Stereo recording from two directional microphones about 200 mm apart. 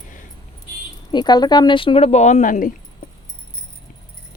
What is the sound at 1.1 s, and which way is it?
Speech, 20° left (ahead or behind).